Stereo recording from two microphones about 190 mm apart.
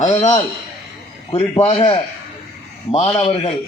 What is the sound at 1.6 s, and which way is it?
A man's voice, 30° left (ahead or behind).